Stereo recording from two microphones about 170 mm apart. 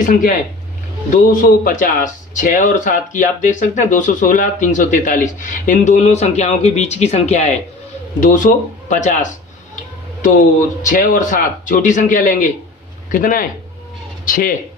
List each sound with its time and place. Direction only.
0.0 s speech: 55° left (ahead or behind)
10.9 s speech: 50° left (ahead or behind)